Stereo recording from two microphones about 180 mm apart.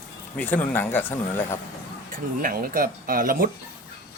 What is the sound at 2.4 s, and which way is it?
Speech, 50° right (ahead or behind).